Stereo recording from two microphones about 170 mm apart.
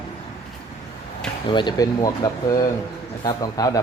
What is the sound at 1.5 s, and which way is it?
Speech, 25° left (ahead or behind).